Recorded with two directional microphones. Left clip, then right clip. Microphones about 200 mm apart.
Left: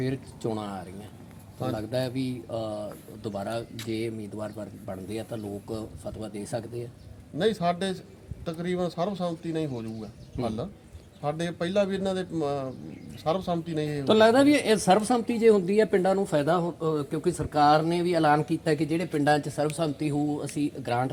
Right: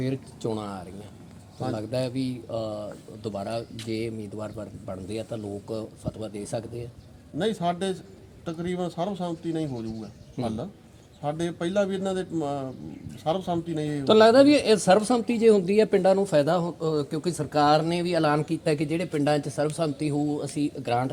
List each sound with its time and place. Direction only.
0.0 s speech: 35° right (ahead or behind)
7.3 s a man's voice: centre (ahead or behind)
10.4 s speech: 35° right (ahead or behind)
11.2 s a man's voice: centre (ahead or behind)
14.0 s speech: 40° right (ahead or behind)